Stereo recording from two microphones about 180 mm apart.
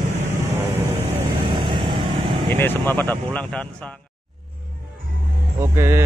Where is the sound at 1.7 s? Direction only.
25° right (ahead or behind).